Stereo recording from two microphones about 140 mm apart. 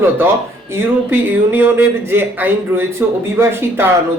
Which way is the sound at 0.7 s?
15° right (ahead or behind).